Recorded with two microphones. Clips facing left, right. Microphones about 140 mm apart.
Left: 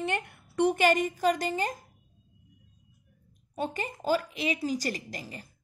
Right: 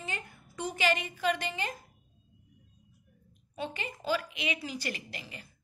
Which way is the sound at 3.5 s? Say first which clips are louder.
Left 5 dB; 40° left (ahead or behind).